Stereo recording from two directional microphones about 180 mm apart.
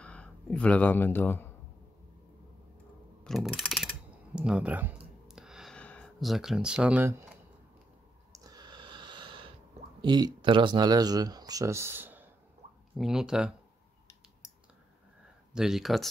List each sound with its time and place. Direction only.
0.0 s speech: 5° left (ahead or behind)
3.3 s speech: centre (ahead or behind)
4.4 s a sound: 5° right (ahead or behind)
8.3 s snort: 20° right (ahead or behind)
10.0 s speech: 25° right (ahead or behind); by 13.5 s 5° right (ahead or behind)
15.5 s speech: centre (ahead or behind)